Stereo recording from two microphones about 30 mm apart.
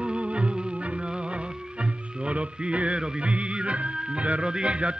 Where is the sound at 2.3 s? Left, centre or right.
Right.